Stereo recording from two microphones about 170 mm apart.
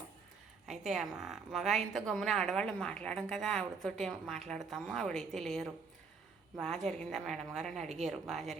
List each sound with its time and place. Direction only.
0.7 s a woman's voice: 5° right (ahead or behind)